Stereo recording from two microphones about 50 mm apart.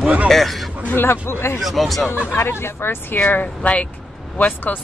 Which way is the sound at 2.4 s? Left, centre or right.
Left.